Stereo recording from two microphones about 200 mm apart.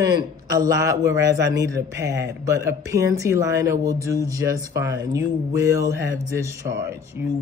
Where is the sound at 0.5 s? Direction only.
15° right (ahead or behind).